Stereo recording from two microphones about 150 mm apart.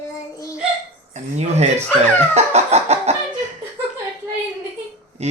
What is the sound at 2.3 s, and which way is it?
Chicken, 45° right (ahead or behind).